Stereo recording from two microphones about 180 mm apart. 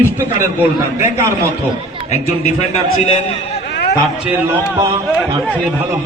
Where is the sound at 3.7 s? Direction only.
65° left (ahead or behind).